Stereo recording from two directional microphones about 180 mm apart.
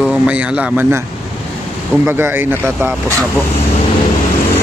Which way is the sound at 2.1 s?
10° right (ahead or behind).